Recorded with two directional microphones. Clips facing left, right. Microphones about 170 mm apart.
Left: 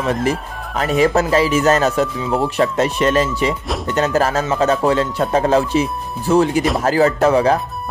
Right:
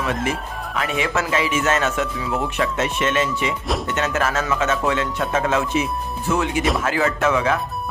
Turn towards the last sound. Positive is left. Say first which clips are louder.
# left 6 dB
turn(degrees=35)  # may be behind; listen again after turning